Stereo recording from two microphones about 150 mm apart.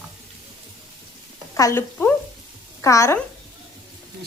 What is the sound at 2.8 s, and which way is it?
Speech, 20° left (ahead or behind).